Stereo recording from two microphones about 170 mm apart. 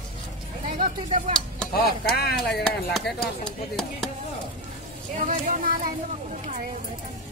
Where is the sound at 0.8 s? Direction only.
45° right (ahead or behind).